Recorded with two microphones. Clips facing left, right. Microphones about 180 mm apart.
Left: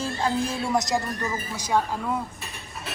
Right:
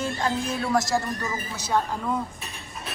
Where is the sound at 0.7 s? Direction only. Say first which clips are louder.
Right 2 dB; 20° left (ahead or behind).